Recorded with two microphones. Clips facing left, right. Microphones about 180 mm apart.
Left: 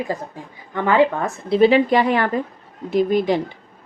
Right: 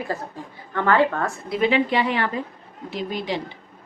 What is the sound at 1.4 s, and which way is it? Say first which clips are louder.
A woman's voice: left 7 dB; 30° left (ahead or behind).